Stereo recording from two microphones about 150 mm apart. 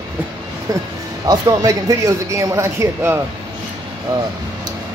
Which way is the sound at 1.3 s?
25° right (ahead or behind).